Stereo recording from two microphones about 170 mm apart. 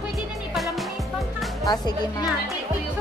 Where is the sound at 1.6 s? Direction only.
25° left (ahead or behind).